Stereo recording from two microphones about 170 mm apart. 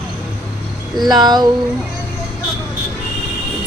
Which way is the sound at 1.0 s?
25° right (ahead or behind).